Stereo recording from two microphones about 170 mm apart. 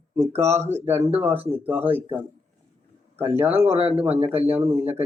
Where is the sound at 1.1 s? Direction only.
15° right (ahead or behind).